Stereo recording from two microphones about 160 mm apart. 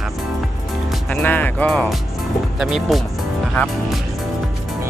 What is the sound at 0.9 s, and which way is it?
Speech, 10° left (ahead or behind).